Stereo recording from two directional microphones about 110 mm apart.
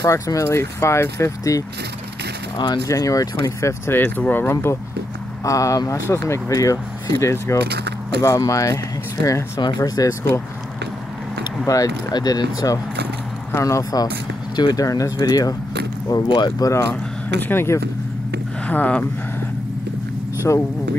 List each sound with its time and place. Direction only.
0.0 s speech: 30° left (ahead or behind)
2.5 s speech: 40° left (ahead or behind)
9.6 s speech: 40° left (ahead or behind)
11.6 s speech: 35° left (ahead or behind)
13.5 s speech: 25° left (ahead or behind)
14.5 s speech: 40° left (ahead or behind)
16.9 s speech: 20° left (ahead or behind)
20.4 s speech: 25° left (ahead or behind)